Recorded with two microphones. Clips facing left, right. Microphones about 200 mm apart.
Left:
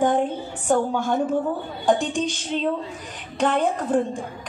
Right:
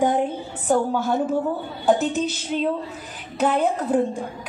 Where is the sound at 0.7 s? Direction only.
5° right (ahead or behind).